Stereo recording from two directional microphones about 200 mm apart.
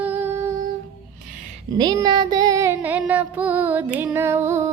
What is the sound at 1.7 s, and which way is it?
Music, 20° right (ahead or behind).